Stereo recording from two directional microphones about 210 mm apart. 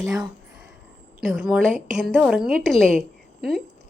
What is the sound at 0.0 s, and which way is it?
A woman's voice, centre (ahead or behind).